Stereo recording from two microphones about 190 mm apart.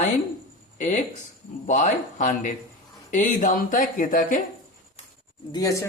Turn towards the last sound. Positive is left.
turn(degrees=15)  # may be behind; listen again after turning